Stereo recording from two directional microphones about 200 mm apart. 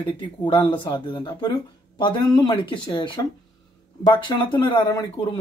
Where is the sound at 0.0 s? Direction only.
25° left (ahead or behind).